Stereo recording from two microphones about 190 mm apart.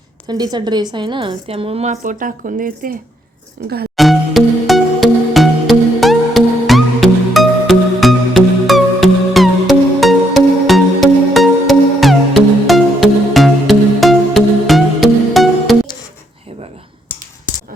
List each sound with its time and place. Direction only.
0.3 s a woman's voice: 20° right (ahead or behind); by 3.7 s 55° right (ahead or behind)
3.9 s music: centre (ahead or behind)